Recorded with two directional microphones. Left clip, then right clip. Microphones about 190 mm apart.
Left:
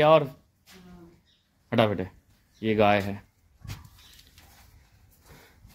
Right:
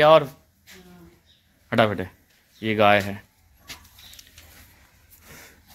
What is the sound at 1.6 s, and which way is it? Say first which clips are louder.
Speech: right 3 dB; centre (ahead or behind).